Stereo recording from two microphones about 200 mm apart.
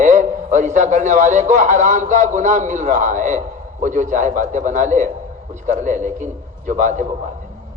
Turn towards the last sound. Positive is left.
turn(degrees=-40)  # may be behind; listen again after turning